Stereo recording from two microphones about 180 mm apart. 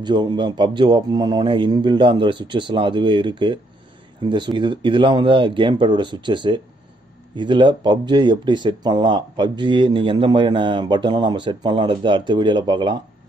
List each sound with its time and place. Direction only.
0.0 s speech: 25° right (ahead or behind)